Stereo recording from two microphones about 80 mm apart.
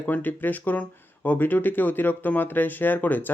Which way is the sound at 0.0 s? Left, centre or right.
Left.